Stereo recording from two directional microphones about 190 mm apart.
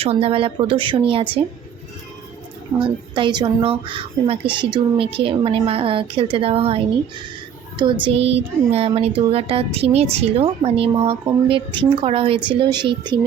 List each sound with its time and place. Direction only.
0.0 s speech: 30° right (ahead or behind)
2.7 s speech: 25° right (ahead or behind)